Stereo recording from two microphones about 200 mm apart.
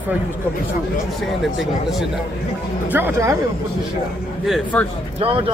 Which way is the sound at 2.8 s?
10° right (ahead or behind).